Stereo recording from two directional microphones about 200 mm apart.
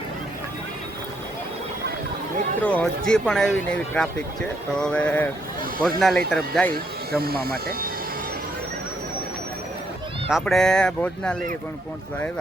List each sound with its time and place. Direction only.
2.6 s a sound: 5° left (ahead or behind)
3.1 s speech: 5° left (ahead or behind)
4.8 s a sound: 5° left (ahead or behind)
5.8 s speech: centre (ahead or behind)
7.2 s speech: 50° right (ahead or behind)
10.2 s speech: centre (ahead or behind)